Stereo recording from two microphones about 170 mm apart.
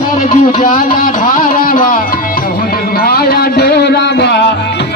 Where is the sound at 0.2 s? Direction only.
50° left (ahead or behind).